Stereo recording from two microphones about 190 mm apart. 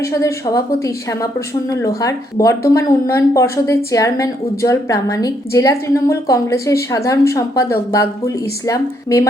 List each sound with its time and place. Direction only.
0.0 s a woman's voice: 15° left (ahead or behind)